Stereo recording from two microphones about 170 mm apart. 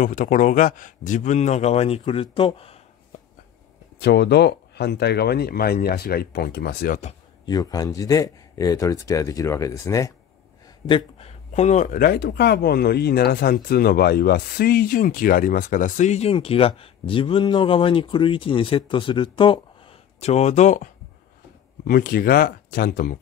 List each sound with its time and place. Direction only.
0.0 s speech: 50° left (ahead or behind); by 2.8 s 35° left (ahead or behind)
4.0 s speech: 80° left
7.4 s speech: 20° left (ahead or behind)
10.9 s speech: 30° left (ahead or behind)
21.8 s speech: 60° left (ahead or behind)